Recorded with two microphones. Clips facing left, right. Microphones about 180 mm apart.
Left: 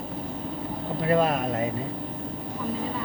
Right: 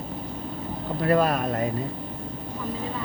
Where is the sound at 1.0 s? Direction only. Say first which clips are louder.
Right 1 dB; 20° left (ahead or behind).